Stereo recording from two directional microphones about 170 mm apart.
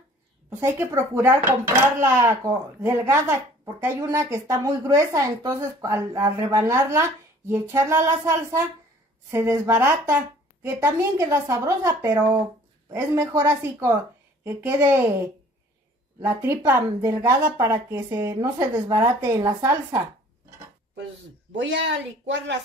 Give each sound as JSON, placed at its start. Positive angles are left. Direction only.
{"t": 0.6, "sound": "a woman's voice", "side_deg": -15}
{"t": 16.2, "sound": "a woman's voice", "side_deg": -15}
{"t": 21.7, "sound": "speech", "side_deg": -90}